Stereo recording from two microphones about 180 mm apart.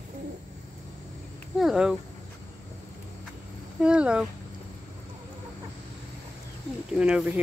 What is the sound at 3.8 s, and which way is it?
Speech, 5° right (ahead or behind).